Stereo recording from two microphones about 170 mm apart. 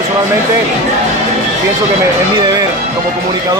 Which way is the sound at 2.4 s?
25° right (ahead or behind).